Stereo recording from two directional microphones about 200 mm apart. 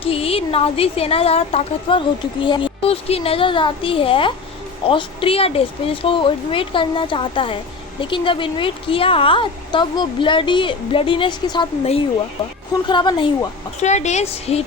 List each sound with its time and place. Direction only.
0.0 s speech: 30° left (ahead or behind)
13.8 s a woman's voice: 35° left (ahead or behind)